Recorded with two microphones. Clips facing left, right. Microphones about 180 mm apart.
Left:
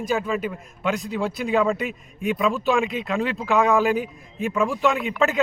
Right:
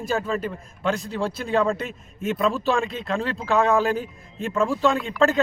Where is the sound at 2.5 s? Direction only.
15° left (ahead or behind).